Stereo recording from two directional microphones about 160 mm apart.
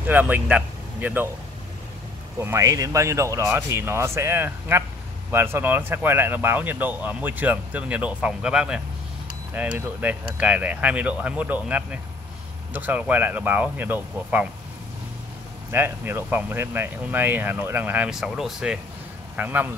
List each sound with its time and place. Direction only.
0.0 s speech: 10° right (ahead or behind)
2.4 s speech: 20° right (ahead or behind)
15.7 s speech: 15° right (ahead or behind)